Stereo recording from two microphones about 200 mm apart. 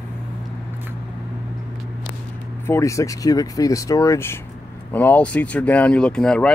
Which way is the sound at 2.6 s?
15° left (ahead or behind).